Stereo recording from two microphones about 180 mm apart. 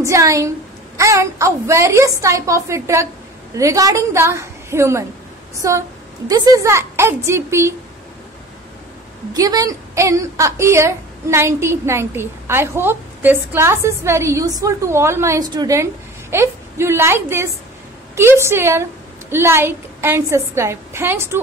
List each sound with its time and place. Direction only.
0.0 s a woman's voice: 15° right (ahead or behind)
9.3 s a woman's voice: 20° right (ahead or behind)